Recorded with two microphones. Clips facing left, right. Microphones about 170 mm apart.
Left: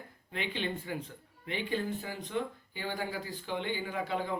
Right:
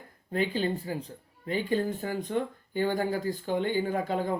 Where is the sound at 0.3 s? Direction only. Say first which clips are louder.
Right 7 dB; 40° right (ahead or behind).